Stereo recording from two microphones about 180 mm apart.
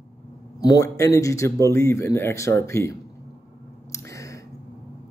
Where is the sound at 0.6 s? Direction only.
20° left (ahead or behind).